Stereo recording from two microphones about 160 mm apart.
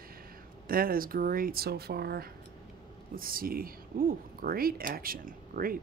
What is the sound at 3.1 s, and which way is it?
Speech, 65° right (ahead or behind).